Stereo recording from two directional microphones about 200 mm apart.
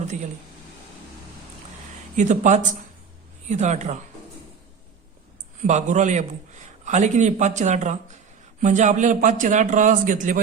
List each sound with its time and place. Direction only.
2.1 s a man's voice: 35° right (ahead or behind)
5.6 s a man's voice: 35° right (ahead or behind)